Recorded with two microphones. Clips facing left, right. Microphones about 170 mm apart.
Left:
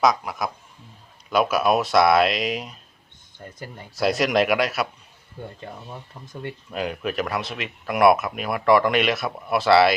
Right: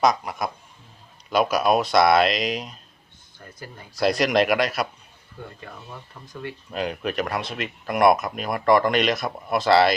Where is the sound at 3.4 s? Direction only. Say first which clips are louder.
Left 5 dB; 25° left (ahead or behind).